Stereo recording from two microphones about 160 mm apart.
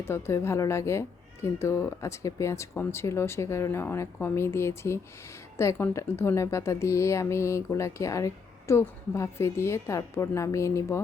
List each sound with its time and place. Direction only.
0.0 s a woman's voice: 15° left (ahead or behind)